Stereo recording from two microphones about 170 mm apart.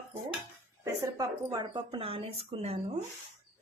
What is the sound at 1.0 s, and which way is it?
A woman's voice, 20° right (ahead or behind).